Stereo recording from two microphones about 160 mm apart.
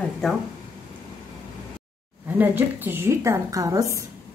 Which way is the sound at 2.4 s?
10° right (ahead or behind).